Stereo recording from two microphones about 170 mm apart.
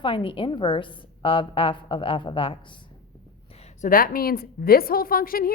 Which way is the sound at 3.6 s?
50° left (ahead or behind).